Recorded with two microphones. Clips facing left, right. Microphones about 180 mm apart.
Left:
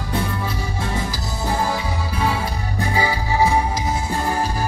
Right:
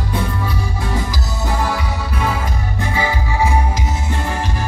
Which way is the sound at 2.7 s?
35° left (ahead or behind).